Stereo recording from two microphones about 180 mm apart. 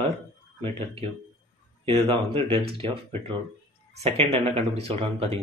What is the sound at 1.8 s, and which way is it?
Speech, 30° right (ahead or behind).